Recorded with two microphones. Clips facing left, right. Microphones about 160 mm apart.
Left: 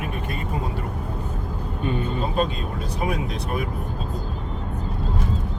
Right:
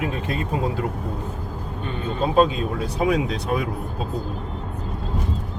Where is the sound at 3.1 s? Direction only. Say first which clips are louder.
Right 6 dB; 90° right.